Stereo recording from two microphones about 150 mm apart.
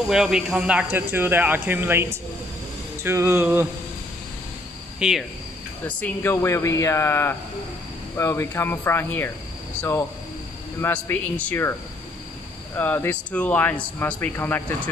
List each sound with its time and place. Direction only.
0.1 s speech: 5° right (ahead or behind)
4.9 s cricket: 5° right (ahead or behind)
5.9 s a man's voice: 10° left (ahead or behind)
6.3 s a man's voice: 20° left (ahead or behind)
10.8 s a man's voice: 15° left (ahead or behind)
12.7 s a man's voice: 15° left (ahead or behind)